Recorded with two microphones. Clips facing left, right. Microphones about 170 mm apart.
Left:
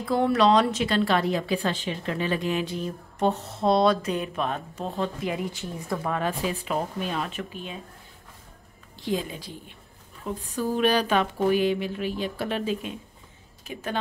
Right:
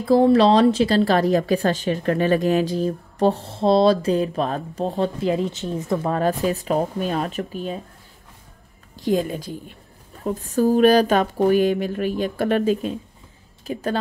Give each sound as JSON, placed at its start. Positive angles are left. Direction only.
{"t": 0.0, "sound": "a woman's voice", "side_deg": -30}
{"t": 6.0, "sound": "a woman's voice", "side_deg": -40}
{"t": 9.0, "sound": "speech", "side_deg": -50}
{"t": 13.7, "sound": "a woman's voice", "side_deg": -35}